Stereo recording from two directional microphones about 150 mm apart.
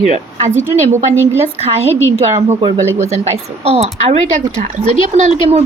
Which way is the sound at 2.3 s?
45° right (ahead or behind).